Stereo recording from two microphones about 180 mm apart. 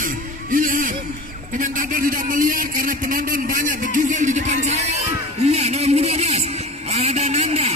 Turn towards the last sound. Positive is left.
turn(degrees=-40)  # may be behind; listen again after turning